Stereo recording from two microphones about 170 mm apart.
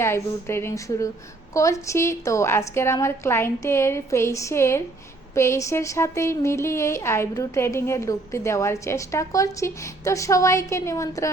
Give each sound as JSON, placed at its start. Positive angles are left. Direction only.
{"t": 0.0, "sound": "a woman's voice", "side_deg": 15}